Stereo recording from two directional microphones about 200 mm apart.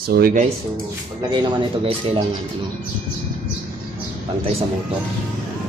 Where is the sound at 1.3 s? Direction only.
25° right (ahead or behind).